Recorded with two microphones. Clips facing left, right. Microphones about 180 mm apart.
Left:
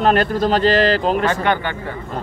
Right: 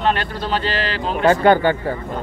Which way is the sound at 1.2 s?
35° right (ahead or behind).